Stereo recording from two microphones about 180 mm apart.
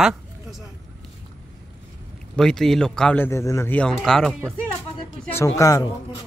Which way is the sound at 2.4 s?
Centre (ahead or behind).